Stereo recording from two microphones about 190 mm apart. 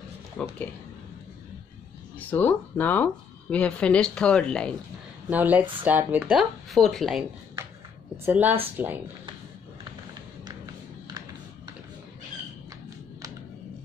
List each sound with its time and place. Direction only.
0.4 s speech: 10° left (ahead or behind)
2.1 s speech: 10° left (ahead or behind)
5.3 s speech: 10° right (ahead or behind)
8.3 s speech: 10° right (ahead or behind)